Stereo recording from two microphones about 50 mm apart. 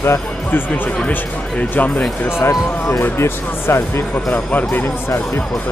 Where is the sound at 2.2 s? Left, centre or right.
Left.